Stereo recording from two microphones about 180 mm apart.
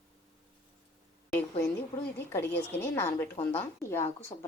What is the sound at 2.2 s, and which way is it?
Speech, 10° left (ahead or behind).